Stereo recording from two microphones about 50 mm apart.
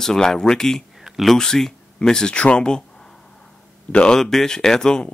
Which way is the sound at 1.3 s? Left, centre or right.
Centre.